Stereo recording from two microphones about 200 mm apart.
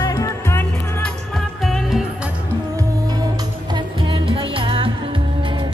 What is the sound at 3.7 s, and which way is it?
Music, 25° right (ahead or behind).